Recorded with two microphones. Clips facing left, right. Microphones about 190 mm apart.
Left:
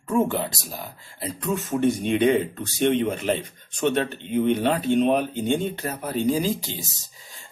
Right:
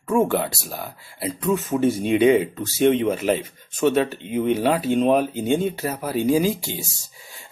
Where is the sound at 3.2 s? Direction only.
40° right (ahead or behind).